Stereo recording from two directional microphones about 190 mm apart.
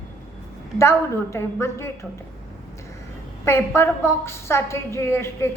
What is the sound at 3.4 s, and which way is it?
A woman's voice, 15° left (ahead or behind).